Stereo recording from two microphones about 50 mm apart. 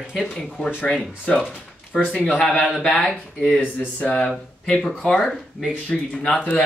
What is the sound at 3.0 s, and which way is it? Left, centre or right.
Speech, centre.